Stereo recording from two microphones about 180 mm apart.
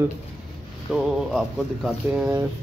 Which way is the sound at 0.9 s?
Centre (ahead or behind).